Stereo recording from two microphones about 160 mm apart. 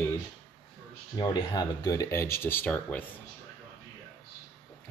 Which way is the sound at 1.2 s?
25° left (ahead or behind).